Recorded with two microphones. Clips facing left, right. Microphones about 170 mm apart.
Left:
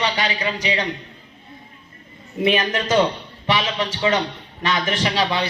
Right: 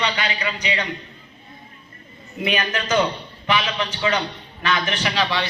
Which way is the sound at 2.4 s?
30° left (ahead or behind).